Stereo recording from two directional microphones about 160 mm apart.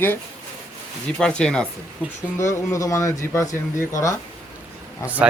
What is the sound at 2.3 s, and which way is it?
Speech, 20° left (ahead or behind).